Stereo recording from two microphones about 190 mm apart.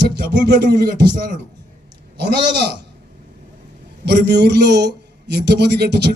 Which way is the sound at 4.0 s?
60° right (ahead or behind).